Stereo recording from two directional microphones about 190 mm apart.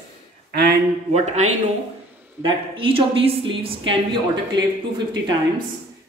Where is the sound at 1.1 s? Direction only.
35° right (ahead or behind).